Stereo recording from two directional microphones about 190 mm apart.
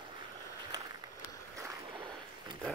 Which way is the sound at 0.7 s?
20° right (ahead or behind).